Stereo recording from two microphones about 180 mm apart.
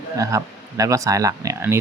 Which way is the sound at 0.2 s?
20° right (ahead or behind).